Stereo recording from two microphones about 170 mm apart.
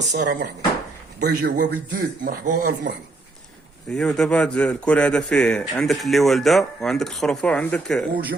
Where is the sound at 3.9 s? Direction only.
5° left (ahead or behind).